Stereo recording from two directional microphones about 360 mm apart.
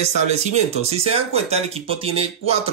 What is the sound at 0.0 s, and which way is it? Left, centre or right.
Speech, centre.